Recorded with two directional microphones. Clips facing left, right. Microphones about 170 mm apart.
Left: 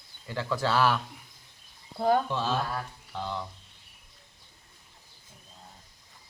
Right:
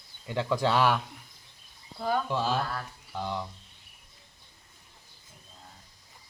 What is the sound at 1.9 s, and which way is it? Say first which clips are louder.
Speech: left 5 dB; 45° left (ahead or behind).